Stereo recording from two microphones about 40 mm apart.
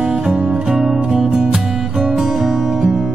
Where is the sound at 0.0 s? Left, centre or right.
Centre.